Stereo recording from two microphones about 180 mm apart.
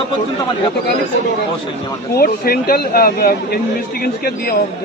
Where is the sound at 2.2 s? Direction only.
55° left (ahead or behind).